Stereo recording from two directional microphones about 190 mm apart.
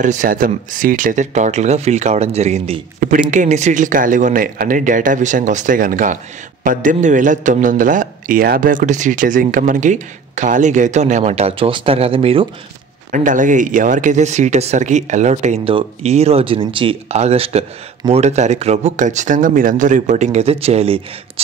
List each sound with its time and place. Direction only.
0.0 s speech: 40° right (ahead or behind)
3.0 s a man's voice: 45° right (ahead or behind); by 12.4 s 30° right (ahead or behind)
13.1 s speech: 45° right (ahead or behind)